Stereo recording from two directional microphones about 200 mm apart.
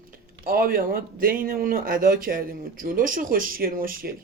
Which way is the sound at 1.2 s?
45° right (ahead or behind).